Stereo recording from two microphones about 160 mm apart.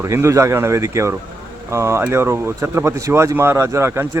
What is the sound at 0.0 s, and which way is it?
Speech, 15° right (ahead or behind).